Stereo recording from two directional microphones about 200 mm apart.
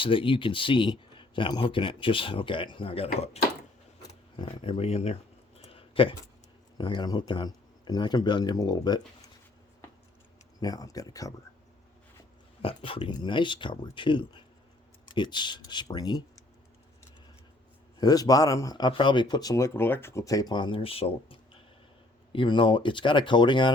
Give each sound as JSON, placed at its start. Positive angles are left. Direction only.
{"t": 0.0, "sound": "speech", "side_deg": 25}
{"t": 4.4, "sound": "speech", "side_deg": 25}
{"t": 5.5, "sound": "a sound", "side_deg": 25}
{"t": 6.7, "sound": "speech", "side_deg": 20}
{"t": 10.6, "sound": "speech", "side_deg": 20}
{"t": 12.6, "sound": "speech", "side_deg": 25}
{"t": 18.0, "sound": "speech", "side_deg": 20}